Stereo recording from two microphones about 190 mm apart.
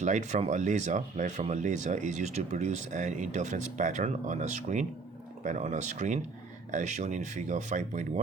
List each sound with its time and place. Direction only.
0.0 s speech: 40° right (ahead or behind)